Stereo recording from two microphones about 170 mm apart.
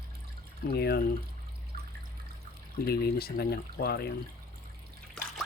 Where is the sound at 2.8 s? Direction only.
65° left (ahead or behind).